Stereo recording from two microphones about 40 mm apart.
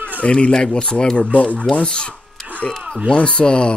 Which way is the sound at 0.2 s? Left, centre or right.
Left.